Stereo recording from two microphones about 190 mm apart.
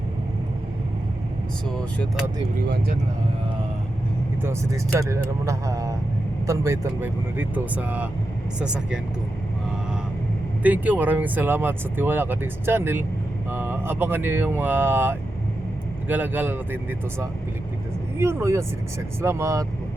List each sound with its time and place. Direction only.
4.4 s speech: 15° right (ahead or behind)
10.6 s speech: 10° right (ahead or behind)
18.2 s speech: 15° right (ahead or behind)